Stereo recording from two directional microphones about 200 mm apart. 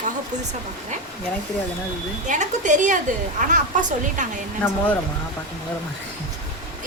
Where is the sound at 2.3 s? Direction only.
40° right (ahead or behind).